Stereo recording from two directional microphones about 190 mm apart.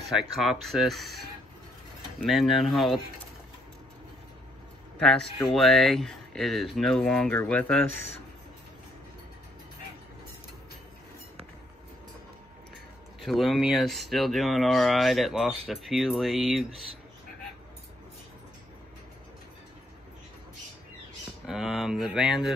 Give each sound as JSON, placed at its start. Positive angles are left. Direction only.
{"t": 0.1, "sound": "speech", "side_deg": 0}
{"t": 2.2, "sound": "speech", "side_deg": 0}
{"t": 4.9, "sound": "speech", "side_deg": 5}
{"t": 13.2, "sound": "speech", "side_deg": 0}
{"t": 21.5, "sound": "speech", "side_deg": 0}